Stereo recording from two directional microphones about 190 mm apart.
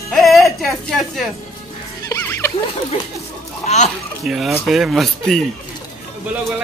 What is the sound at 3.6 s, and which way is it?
Speech, 35° left (ahead or behind).